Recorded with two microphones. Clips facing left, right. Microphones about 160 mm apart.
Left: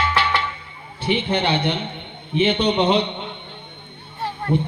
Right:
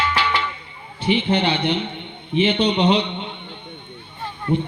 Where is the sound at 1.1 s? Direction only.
55° left (ahead or behind).